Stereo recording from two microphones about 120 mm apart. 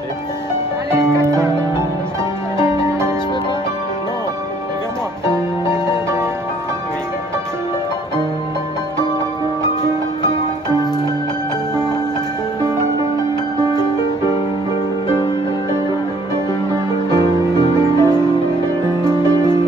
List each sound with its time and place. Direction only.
0.9 s music: 20° right (ahead or behind)
5.7 s music: 20° right (ahead or behind)
17.1 s music: 35° left (ahead or behind)
19.0 s music: 25° right (ahead or behind)